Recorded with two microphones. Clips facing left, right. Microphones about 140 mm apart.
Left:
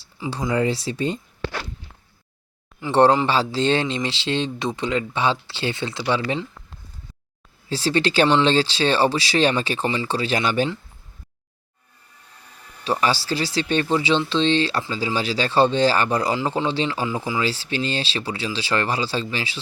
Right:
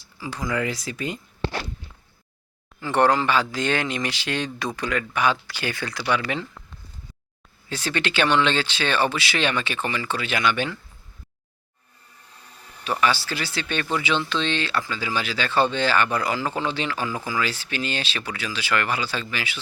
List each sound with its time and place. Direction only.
0.2 s speech: 25° left (ahead or behind)
2.9 s speech: 30° left (ahead or behind)
7.7 s speech: 35° left (ahead or behind)
12.8 s speech: 30° left (ahead or behind)